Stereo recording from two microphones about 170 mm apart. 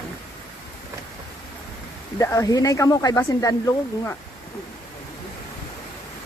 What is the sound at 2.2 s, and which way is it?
Speech, 20° left (ahead or behind).